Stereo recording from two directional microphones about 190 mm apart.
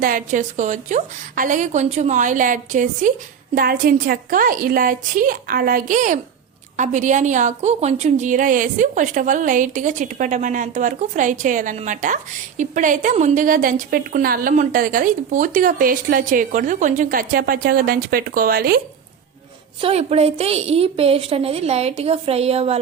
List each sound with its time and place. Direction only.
0.0 s a woman's voice: 45° right (ahead or behind)
19.8 s a woman's voice: 30° right (ahead or behind)